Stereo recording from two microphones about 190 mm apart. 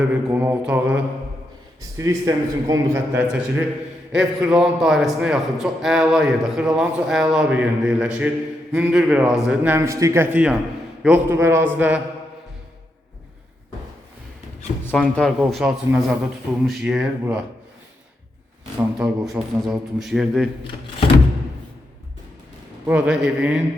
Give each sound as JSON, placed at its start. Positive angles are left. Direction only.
{"t": 0.1, "sound": "a man's voice", "side_deg": -10}
{"t": 14.8, "sound": "a man's voice", "side_deg": 5}
{"t": 18.9, "sound": "a man's voice", "side_deg": -5}
{"t": 22.9, "sound": "a man's voice", "side_deg": -5}